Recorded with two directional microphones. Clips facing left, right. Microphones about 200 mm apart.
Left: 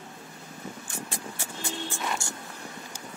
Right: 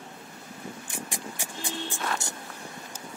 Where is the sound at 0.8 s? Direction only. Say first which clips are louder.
Even; 15° right (ahead or behind).